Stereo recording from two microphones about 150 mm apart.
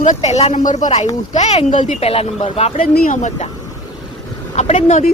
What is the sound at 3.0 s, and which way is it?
Speech, 55° left (ahead or behind).